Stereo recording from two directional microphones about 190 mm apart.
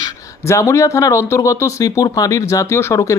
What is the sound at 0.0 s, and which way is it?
Speech, 15° left (ahead or behind).